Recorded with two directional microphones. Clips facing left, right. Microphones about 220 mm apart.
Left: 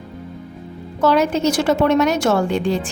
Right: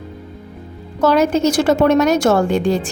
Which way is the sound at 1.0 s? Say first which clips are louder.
Right 2 dB; 45° right (ahead or behind).